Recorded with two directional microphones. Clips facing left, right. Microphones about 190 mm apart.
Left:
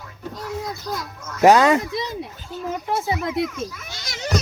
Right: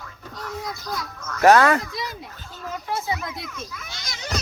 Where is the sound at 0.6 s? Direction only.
15° left (ahead or behind).